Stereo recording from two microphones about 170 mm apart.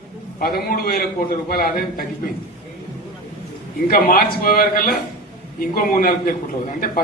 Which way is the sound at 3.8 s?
60° left (ahead or behind).